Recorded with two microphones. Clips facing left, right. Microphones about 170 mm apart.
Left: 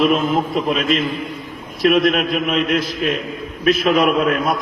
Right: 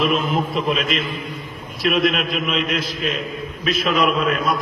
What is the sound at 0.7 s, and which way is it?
A man's voice, 45° left (ahead or behind).